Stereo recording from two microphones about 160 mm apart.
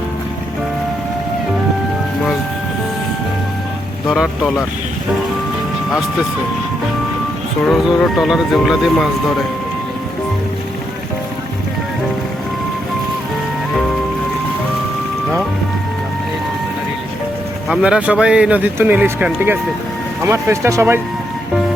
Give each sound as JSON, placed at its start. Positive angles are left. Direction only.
{"t": 4.0, "sound": "speech", "side_deg": 0}
{"t": 7.7, "sound": "speech", "side_deg": 0}
{"t": 17.7, "sound": "speech", "side_deg": -5}